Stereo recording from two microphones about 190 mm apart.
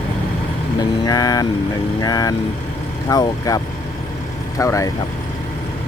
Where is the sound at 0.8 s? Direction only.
20° left (ahead or behind).